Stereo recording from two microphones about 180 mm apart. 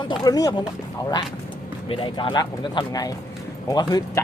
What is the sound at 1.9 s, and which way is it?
Speech, 25° left (ahead or behind).